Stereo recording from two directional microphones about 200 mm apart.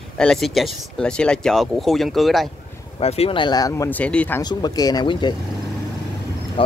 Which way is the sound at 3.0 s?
30° left (ahead or behind).